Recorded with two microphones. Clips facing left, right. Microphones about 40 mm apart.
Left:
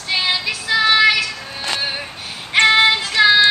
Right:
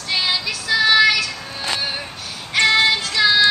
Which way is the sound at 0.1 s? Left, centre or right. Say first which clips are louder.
Left 2 dB; centre.